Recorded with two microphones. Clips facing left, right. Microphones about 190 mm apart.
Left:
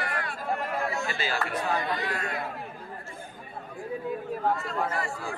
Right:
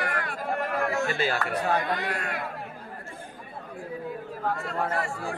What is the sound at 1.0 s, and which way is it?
Speech, 50° right (ahead or behind).